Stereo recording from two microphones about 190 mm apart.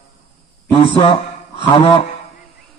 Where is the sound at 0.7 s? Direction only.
30° left (ahead or behind).